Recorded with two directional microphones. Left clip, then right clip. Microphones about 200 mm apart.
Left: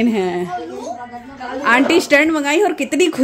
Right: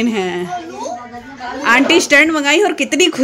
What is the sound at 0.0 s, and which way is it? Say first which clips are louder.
Speech: even; 5° left (ahead or behind).